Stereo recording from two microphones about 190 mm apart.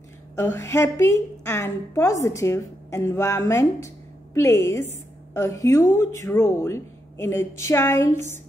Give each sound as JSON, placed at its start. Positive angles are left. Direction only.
{"t": 0.4, "sound": "a woman's voice", "side_deg": 15}